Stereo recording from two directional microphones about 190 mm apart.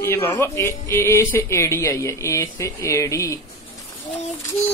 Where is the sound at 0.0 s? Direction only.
15° left (ahead or behind).